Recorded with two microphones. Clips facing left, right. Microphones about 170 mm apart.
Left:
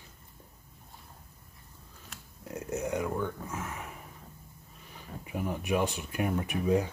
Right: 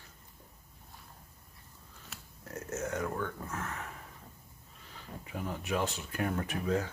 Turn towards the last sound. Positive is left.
turn(degrees=15)  # may be behind; listen again after turning